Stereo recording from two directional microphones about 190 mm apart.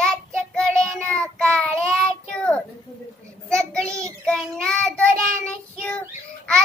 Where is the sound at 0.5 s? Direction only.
Centre (ahead or behind).